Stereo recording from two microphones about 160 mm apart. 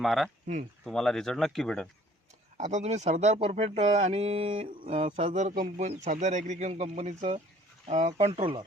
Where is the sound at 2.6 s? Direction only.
50° right (ahead or behind).